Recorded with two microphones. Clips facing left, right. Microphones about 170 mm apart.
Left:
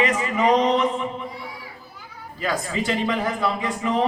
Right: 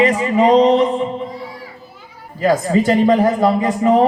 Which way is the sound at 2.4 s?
45° right (ahead or behind).